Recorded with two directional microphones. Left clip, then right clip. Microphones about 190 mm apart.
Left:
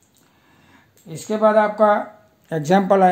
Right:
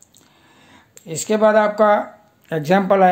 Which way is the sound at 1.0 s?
35° right (ahead or behind).